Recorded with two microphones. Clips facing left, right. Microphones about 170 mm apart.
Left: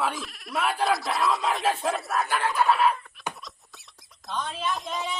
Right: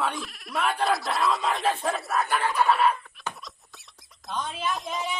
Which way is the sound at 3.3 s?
15° left (ahead or behind).